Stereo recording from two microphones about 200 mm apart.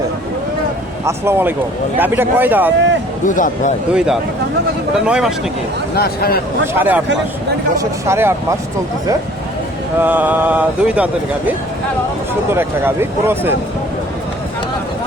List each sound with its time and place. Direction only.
1.0 s speech: 10° right (ahead or behind)
3.2 s speech: 40° left (ahead or behind)
3.9 s speech: 5° right (ahead or behind)
5.9 s speech: 50° left (ahead or behind)
6.7 s speech: 10° right (ahead or behind)
10.0 s speech: 10° right (ahead or behind)